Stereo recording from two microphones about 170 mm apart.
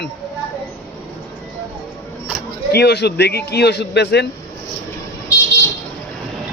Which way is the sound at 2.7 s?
70° left (ahead or behind).